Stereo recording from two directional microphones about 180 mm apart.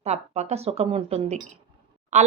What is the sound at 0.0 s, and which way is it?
A woman's voice, 40° right (ahead or behind).